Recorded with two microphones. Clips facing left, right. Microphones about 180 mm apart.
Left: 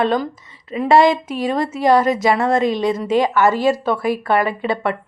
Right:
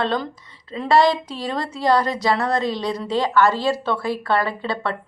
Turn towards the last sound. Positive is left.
turn(degrees=15)  # may be behind; listen again after turning